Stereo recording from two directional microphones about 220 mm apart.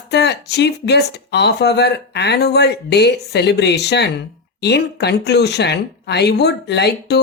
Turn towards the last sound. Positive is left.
turn(degrees=50)  # may be behind; listen again after turning